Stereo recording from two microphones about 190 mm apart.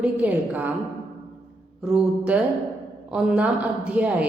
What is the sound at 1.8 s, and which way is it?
A woman's voice, 5° right (ahead or behind).